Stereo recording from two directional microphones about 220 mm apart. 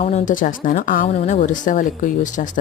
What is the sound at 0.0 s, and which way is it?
A woman's voice, 35° left (ahead or behind).